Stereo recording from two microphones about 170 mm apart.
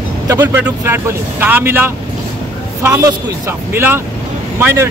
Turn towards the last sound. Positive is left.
turn(degrees=-15)  # may be behind; listen again after turning